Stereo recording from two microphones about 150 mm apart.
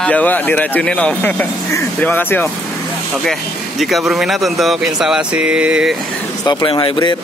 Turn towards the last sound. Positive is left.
turn(degrees=30)  # may be behind; listen again after turning